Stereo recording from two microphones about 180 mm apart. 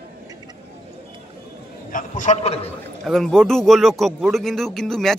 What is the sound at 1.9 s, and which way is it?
Speech, 45° left (ahead or behind).